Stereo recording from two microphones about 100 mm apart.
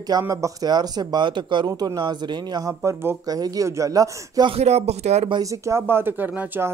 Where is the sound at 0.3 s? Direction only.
35° right (ahead or behind).